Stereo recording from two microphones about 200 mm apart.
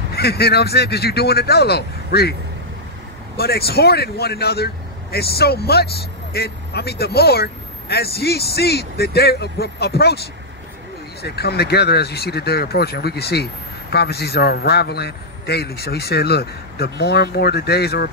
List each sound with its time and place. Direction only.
0.1 s a man's voice: 55° left (ahead or behind)
3.3 s a man's voice: 50° left (ahead or behind)
11.2 s a man's voice: 55° left (ahead or behind)